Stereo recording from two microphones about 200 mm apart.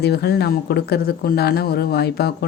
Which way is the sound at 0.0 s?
55° left (ahead or behind).